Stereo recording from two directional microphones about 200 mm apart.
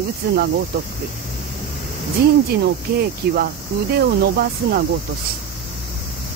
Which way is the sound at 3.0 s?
50° right (ahead or behind).